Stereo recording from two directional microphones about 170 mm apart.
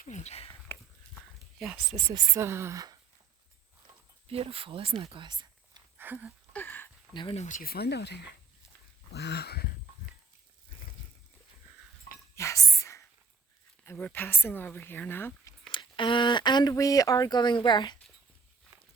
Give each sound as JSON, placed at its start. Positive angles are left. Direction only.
{"t": 0.0, "sound": "speech", "side_deg": 45}
{"t": 1.5, "sound": "speech", "side_deg": 0}
{"t": 2.0, "sound": "a woman's voice", "side_deg": -25}
{"t": 4.3, "sound": "speech", "side_deg": -35}
{"t": 6.0, "sound": "a sound", "side_deg": -10}
{"t": 6.5, "sound": "a sound", "side_deg": 10}
{"t": 7.1, "sound": "speech", "side_deg": 25}
{"t": 7.3, "sound": "speech", "side_deg": 45}
{"t": 12.4, "sound": "whispering", "side_deg": 20}
{"t": 13.8, "sound": "speech", "side_deg": 10}
{"t": 15.7, "sound": "speech", "side_deg": 30}